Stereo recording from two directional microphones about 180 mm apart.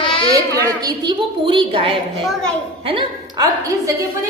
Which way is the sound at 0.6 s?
20° right (ahead or behind).